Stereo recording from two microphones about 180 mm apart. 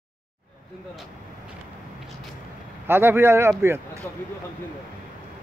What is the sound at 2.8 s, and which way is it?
Speech, 10° right (ahead or behind).